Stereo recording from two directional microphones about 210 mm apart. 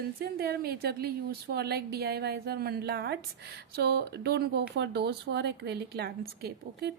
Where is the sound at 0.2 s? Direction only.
45° right (ahead or behind).